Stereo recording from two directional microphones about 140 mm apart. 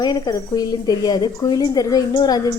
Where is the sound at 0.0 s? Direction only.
30° left (ahead or behind).